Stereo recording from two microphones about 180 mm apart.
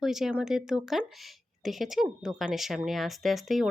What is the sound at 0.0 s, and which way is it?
Speech, centre (ahead or behind).